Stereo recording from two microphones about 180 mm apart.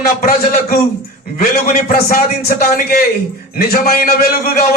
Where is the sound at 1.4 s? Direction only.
45° left (ahead or behind).